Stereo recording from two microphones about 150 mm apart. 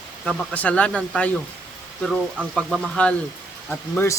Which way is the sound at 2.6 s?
Centre (ahead or behind).